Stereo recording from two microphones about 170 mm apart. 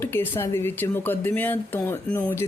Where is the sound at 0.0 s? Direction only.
15° left (ahead or behind).